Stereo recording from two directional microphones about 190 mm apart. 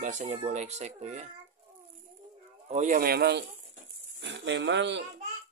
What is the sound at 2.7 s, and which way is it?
Speech, 40° right (ahead or behind).